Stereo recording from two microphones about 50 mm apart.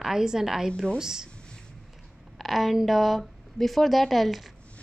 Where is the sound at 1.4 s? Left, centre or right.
Centre.